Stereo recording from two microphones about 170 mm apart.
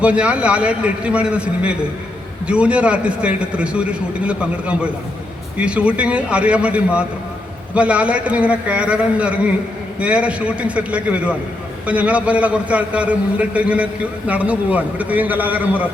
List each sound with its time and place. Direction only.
0.0 s a man's voice: 5° right (ahead or behind)